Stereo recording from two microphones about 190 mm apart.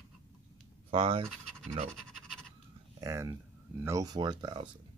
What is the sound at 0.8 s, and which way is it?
Speech, 25° right (ahead or behind).